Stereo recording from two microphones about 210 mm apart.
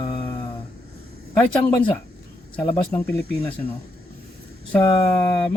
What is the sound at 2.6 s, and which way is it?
Speech, 20° left (ahead or behind).